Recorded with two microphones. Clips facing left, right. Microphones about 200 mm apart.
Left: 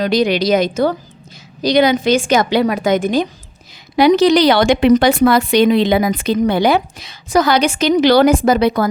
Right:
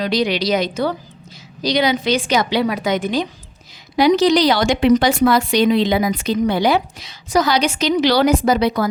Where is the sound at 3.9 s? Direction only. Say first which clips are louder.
Left 3 dB; 60° left (ahead or behind).